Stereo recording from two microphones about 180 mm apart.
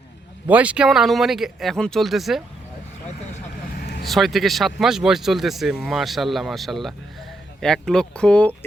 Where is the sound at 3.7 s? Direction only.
60° left (ahead or behind).